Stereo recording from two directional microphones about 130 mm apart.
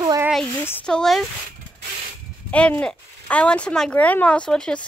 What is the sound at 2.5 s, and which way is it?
Speech, 10° left (ahead or behind).